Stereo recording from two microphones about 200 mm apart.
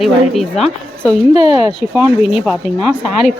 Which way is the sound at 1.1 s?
30° left (ahead or behind).